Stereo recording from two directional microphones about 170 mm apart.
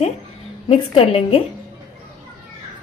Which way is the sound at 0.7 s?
35° left (ahead or behind).